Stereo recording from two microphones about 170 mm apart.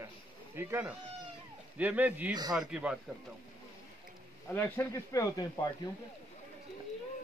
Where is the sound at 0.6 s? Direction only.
15° right (ahead or behind).